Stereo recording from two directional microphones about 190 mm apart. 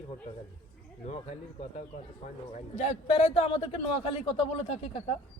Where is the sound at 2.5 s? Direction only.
35° left (ahead or behind).